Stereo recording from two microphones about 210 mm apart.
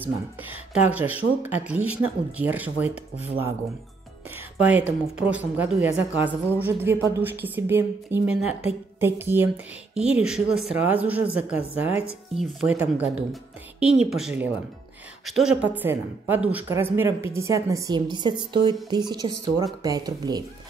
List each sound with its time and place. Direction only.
0.0 s speech: 10° right (ahead or behind)
4.6 s speech: 5° right (ahead or behind)